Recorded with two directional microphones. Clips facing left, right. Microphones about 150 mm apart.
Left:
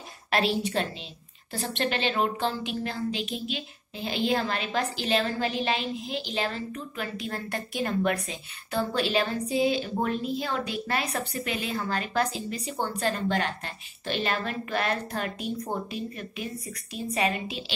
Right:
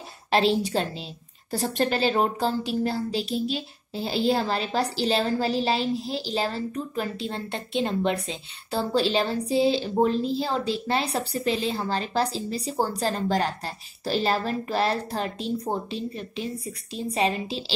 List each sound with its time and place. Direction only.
0.3 s a woman's voice: 30° right (ahead or behind)